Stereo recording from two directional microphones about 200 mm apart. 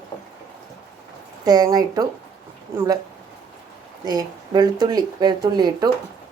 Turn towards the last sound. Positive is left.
turn(degrees=-20)  # may be behind; listen again after turning